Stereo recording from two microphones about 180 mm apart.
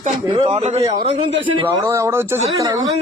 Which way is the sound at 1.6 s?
15° right (ahead or behind).